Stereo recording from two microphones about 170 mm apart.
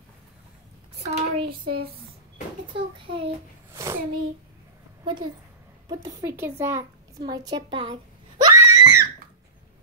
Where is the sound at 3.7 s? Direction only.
15° right (ahead or behind).